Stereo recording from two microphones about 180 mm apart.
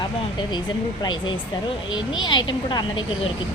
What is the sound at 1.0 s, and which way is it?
Speech, 25° left (ahead or behind).